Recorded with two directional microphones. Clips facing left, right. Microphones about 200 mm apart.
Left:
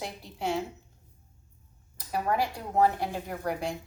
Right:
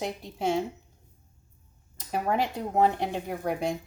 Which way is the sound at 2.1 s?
20° right (ahead or behind).